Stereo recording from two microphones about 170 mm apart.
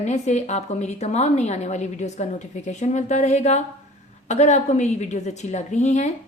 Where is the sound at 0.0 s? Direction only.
40° left (ahead or behind).